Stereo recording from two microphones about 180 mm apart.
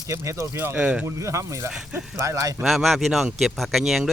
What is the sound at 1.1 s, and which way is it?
Speech, 15° right (ahead or behind).